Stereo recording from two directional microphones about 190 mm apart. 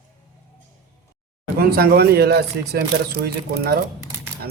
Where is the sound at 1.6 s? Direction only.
50° right (ahead or behind).